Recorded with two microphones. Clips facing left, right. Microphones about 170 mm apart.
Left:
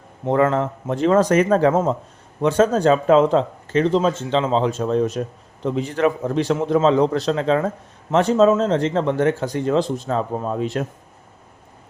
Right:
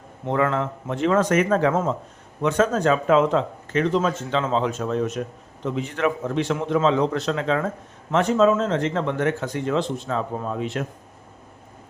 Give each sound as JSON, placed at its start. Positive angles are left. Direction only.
{"t": 0.3, "sound": "speech", "side_deg": 40}